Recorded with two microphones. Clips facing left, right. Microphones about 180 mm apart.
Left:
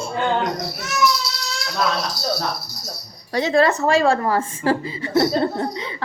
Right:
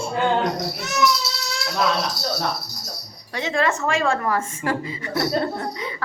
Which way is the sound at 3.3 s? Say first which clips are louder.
Left 5 dB; 35° left (ahead or behind).